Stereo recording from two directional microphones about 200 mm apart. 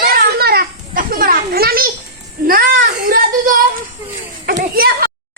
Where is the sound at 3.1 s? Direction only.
45° right (ahead or behind).